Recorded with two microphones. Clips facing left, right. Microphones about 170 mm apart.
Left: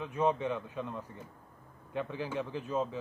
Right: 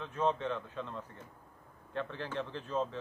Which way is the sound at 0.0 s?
10° left (ahead or behind).